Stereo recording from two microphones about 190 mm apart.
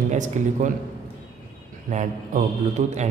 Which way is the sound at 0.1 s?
40° right (ahead or behind).